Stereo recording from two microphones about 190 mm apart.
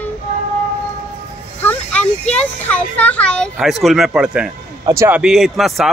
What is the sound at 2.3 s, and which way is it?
Speech, 5° left (ahead or behind).